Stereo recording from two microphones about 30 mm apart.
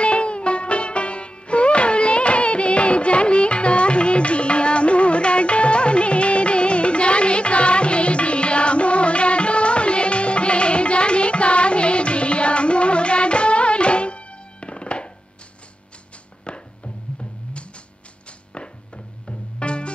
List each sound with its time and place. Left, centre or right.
0.0 s music: left
16.4 s music: left
19.2 s music: left